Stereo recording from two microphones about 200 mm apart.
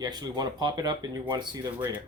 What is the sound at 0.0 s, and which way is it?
Speech, 20° right (ahead or behind).